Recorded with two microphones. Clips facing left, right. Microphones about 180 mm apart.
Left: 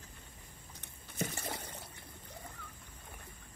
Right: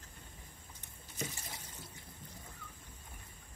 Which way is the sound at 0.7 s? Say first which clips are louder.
Left 5 dB; 60° left (ahead or behind).